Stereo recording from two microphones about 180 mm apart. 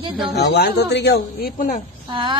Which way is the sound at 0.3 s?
65° left (ahead or behind).